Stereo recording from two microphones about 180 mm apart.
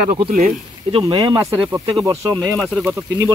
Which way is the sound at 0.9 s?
25° right (ahead or behind).